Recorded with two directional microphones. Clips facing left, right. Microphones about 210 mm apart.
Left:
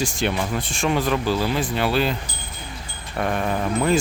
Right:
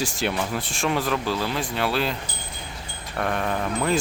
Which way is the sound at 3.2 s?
5° left (ahead or behind).